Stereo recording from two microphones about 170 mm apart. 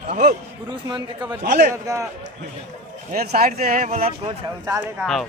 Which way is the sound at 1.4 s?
70° right (ahead or behind).